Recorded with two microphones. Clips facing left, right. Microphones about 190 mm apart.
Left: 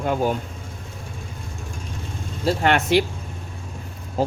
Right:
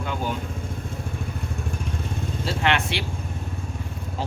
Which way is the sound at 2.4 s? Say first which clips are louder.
Left 5 dB; 45° left (ahead or behind).